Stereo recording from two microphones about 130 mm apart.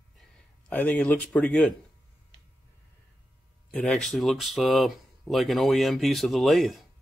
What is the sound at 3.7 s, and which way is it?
Speech, 5° left (ahead or behind).